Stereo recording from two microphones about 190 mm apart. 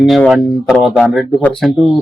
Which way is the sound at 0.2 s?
Centre (ahead or behind).